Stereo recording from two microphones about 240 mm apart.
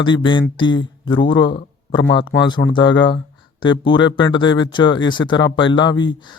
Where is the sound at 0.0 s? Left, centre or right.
Centre.